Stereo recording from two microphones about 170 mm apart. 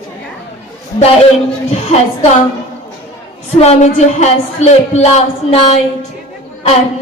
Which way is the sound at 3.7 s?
40° left (ahead or behind).